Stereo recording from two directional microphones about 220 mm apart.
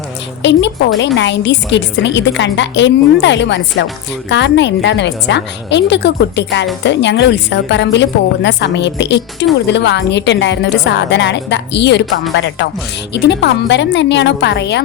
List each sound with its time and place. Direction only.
0.9 s a woman's voice: 55° left (ahead or behind)
13.1 s a woman's voice: 50° left (ahead or behind)